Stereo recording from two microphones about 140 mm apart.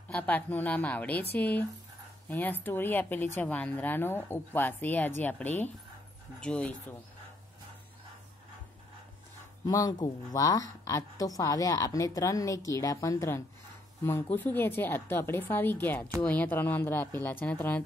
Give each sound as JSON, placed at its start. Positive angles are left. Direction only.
{"t": 0.1, "sound": "a woman's voice", "side_deg": 10}
{"t": 9.7, "sound": "a woman's voice", "side_deg": 25}